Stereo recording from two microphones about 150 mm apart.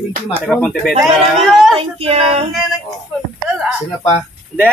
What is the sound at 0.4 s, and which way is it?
Speech, 10° left (ahead or behind).